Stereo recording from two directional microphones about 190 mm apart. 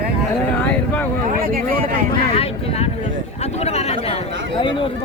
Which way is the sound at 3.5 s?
35° left (ahead or behind).